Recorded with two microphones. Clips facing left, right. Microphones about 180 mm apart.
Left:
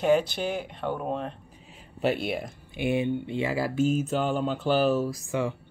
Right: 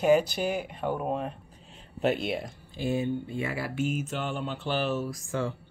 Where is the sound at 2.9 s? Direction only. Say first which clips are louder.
Left 3 dB; 20° left (ahead or behind).